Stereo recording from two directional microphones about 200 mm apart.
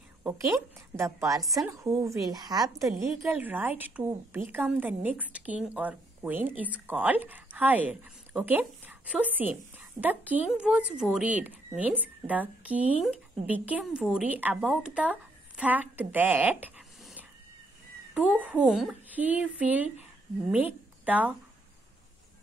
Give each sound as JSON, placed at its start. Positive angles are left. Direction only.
{"t": 0.2, "sound": "a woman's voice", "side_deg": -10}
{"t": 3.2, "sound": "a woman's voice", "side_deg": -10}